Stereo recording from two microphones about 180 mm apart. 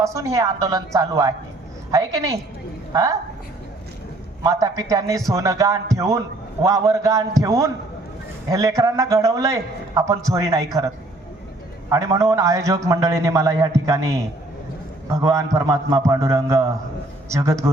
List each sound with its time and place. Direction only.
0.0 s a man's voice: 15° right (ahead or behind)
4.4 s a man's voice: 20° right (ahead or behind)
11.9 s a man's voice: 20° right (ahead or behind)